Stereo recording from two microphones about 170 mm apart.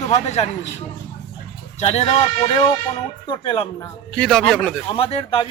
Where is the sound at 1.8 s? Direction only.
40° left (ahead or behind).